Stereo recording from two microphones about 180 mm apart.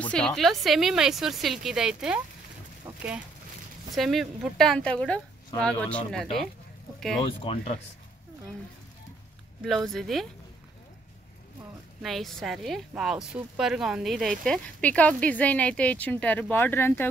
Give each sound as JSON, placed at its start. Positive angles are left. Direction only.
{"t": 0.0, "sound": "speech", "side_deg": 5}
{"t": 3.9, "sound": "speech", "side_deg": 0}
{"t": 7.2, "sound": "speech", "side_deg": 30}
{"t": 9.6, "sound": "speech", "side_deg": 0}
{"t": 12.0, "sound": "speech", "side_deg": 0}